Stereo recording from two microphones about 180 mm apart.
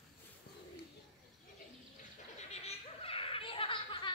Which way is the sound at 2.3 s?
35° left (ahead or behind).